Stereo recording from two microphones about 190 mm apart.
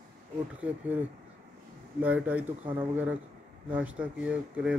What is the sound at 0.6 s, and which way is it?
Speech, 5° right (ahead or behind).